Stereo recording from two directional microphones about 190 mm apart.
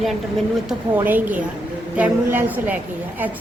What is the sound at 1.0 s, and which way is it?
A woman's voice, 10° right (ahead or behind).